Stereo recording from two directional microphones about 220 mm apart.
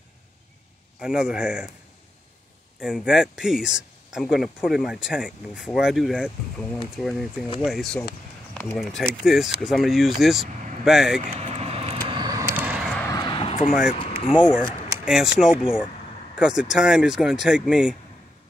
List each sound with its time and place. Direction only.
0.9 s speech: 5° right (ahead or behind)
2.8 s speech: 5° right (ahead or behind)
11.3 s vehicle: 30° right (ahead or behind); by 13.1 s centre (ahead or behind)
13.1 s a sound: 20° left (ahead or behind)
15.0 s speech: centre (ahead or behind)